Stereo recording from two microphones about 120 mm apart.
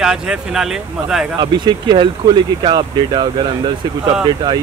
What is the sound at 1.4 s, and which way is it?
Speech, 35° right (ahead or behind).